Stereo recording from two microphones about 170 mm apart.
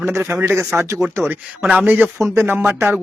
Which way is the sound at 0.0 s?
15° right (ahead or behind).